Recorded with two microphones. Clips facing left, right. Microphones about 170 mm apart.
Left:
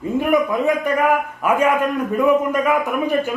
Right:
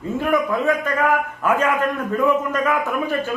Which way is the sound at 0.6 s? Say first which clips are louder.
Left 2 dB; 15° left (ahead or behind).